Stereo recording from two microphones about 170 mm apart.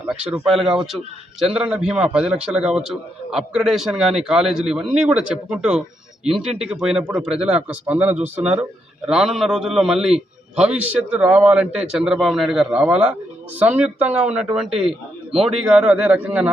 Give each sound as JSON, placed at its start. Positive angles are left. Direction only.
{"t": 0.1, "sound": "a man's voice", "side_deg": 0}
{"t": 15.6, "sound": "speech", "side_deg": -5}